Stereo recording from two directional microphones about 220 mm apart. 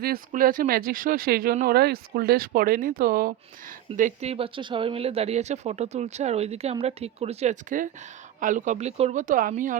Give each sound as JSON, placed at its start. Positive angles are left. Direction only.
{"t": 0.0, "sound": "speech", "side_deg": -40}